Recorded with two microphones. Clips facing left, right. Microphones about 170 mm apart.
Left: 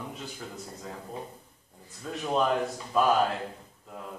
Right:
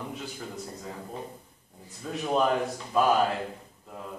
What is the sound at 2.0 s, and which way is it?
A man's voice, 5° right (ahead or behind).